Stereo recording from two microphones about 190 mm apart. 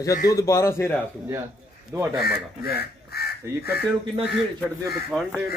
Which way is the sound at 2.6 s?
55° left (ahead or behind).